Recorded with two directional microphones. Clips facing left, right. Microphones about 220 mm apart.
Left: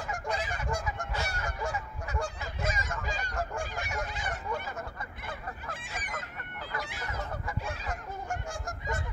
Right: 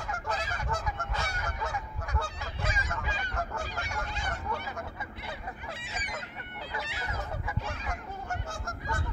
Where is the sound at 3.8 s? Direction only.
10° left (ahead or behind).